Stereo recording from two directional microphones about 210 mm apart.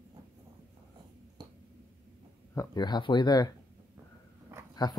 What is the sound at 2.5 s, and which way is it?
Speech, 20° left (ahead or behind).